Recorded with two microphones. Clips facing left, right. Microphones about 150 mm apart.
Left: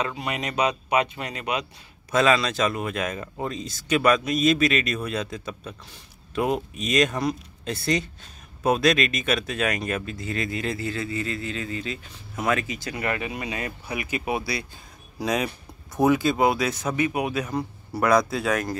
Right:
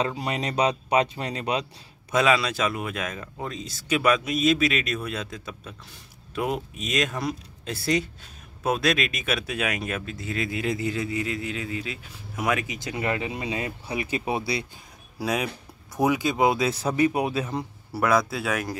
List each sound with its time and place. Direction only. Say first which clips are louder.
0.0 s speech: right 1 dB; 35° right (ahead or behind)
2.1 s speech: left 1 dB; 10° right (ahead or behind)
15.1 s speech: left 1 dB; 5° right (ahead or behind); by 17.6 s 25° right (ahead or behind)
17.9 s speech: left 2 dB; 5° right (ahead or behind)